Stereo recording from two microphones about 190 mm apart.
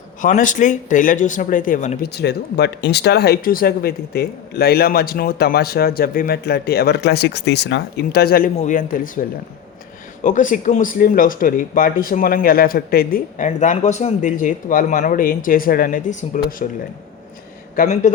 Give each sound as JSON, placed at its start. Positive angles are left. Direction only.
{"t": 0.2, "sound": "speech", "side_deg": 40}
{"t": 2.1, "sound": "speech", "side_deg": 60}
{"t": 8.5, "sound": "speech", "side_deg": 40}
{"t": 10.2, "sound": "speech", "side_deg": 45}
{"t": 17.7, "sound": "speech", "side_deg": 40}